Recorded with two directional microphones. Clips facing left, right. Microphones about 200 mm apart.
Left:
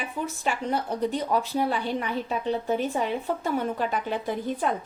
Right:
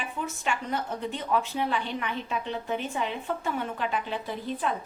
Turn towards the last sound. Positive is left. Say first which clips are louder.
# left 4 dB
turn(degrees=50)  # may be behind; listen again after turning